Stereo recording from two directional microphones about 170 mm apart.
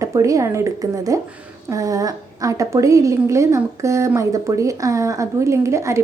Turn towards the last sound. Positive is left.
turn(degrees=-15)  # may be behind; listen again after turning